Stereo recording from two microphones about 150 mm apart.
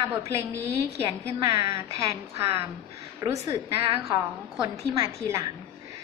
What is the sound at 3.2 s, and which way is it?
A woman's voice, 25° right (ahead or behind).